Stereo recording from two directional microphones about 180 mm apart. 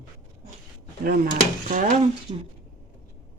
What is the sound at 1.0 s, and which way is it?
Speech, 55° right (ahead or behind).